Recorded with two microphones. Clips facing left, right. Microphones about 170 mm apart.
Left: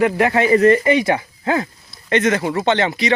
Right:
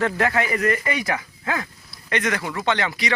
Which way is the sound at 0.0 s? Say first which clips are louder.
Left 6 dB; 20° left (ahead or behind).